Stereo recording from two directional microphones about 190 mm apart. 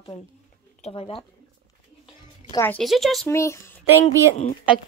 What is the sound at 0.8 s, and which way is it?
Speech, 30° left (ahead or behind).